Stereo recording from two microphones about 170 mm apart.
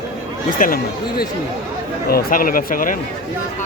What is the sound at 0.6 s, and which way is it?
Speech, 60° left (ahead or behind).